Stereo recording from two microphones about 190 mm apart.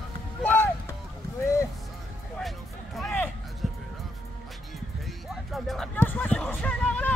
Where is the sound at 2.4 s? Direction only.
Centre (ahead or behind).